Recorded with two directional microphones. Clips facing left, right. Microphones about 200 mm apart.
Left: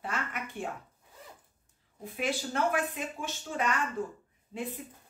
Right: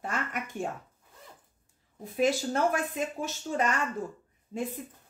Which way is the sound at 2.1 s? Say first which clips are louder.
Right 6 dB; 40° right (ahead or behind).